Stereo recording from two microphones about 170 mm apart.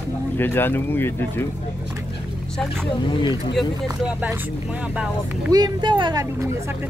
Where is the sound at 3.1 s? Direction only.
30° left (ahead or behind).